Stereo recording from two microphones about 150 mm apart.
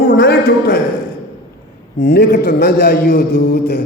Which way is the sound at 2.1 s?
90° left.